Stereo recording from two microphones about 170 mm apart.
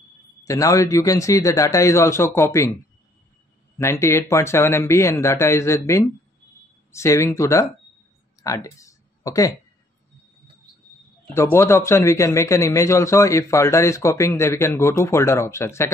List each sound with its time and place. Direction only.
0.5 s a man's voice: 20° left (ahead or behind)
11.5 s a man's voice: 15° left (ahead or behind)